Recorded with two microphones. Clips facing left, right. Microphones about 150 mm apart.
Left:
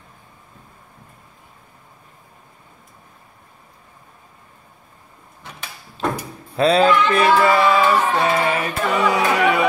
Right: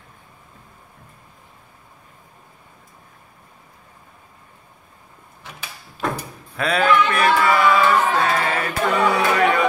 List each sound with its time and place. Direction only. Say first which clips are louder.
6.0 s door: left 2 dB; 25° left (ahead or behind)
6.5 s speech: left 4 dB; 30° left (ahead or behind); by 9.7 s 15° left (ahead or behind)